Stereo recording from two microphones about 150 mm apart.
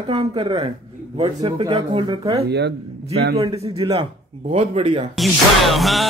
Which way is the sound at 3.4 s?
40° right (ahead or behind).